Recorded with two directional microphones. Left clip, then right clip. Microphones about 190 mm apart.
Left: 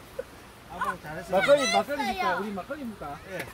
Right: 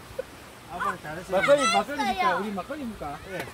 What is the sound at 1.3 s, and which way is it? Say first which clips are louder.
Speech: right 1 dB; 25° left (ahead or behind).